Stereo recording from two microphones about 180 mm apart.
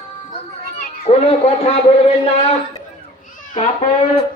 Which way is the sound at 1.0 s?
35° left (ahead or behind).